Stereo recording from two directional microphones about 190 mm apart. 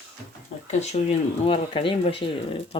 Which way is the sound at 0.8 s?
35° left (ahead or behind).